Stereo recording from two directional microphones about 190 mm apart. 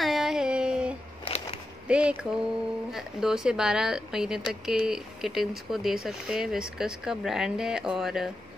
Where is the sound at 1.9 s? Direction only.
5° right (ahead or behind).